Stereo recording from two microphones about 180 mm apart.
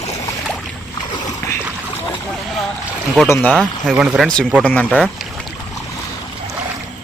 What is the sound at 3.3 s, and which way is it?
Speech, 10° left (ahead or behind).